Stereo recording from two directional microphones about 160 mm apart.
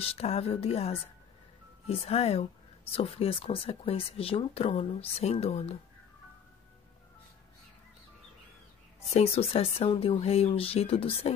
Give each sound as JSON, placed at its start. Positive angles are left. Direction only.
{"t": 0.0, "sound": "speech", "side_deg": 40}
{"t": 9.1, "sound": "speech", "side_deg": 40}